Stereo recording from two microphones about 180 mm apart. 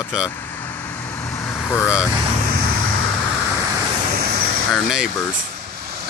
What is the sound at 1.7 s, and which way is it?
Speech, 10° left (ahead or behind).